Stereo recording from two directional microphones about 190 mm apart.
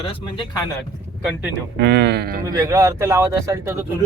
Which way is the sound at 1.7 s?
60° right (ahead or behind).